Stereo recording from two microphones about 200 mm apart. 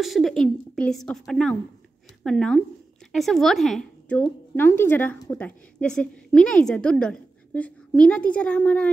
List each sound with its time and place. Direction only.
0.0 s a woman's voice: centre (ahead or behind)